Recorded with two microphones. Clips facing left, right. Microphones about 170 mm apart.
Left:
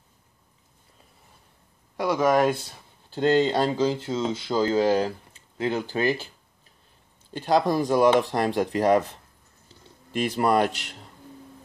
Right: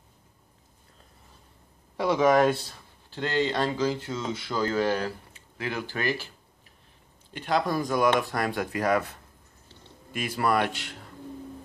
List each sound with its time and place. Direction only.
2.0 s speech: centre (ahead or behind)
3.2 s speech: 35° left (ahead or behind)
7.3 s speech: 35° left (ahead or behind)
10.3 s speech: 20° left (ahead or behind)